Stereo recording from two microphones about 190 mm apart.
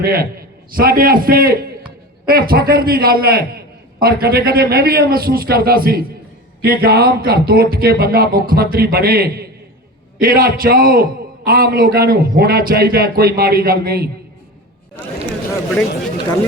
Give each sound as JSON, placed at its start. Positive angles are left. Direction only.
{"t": 0.0, "sound": "a man's voice", "side_deg": -50}
{"t": 15.7, "sound": "speech", "side_deg": 5}